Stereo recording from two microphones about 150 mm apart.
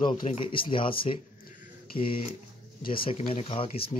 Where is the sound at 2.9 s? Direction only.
40° left (ahead or behind).